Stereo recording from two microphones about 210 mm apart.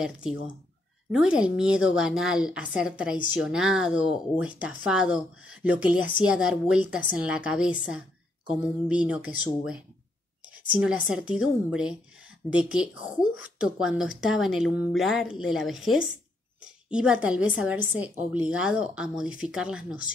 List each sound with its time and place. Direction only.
0.0 s a woman's voice: 5° right (ahead or behind)
10.8 s a woman's voice: 5° right (ahead or behind)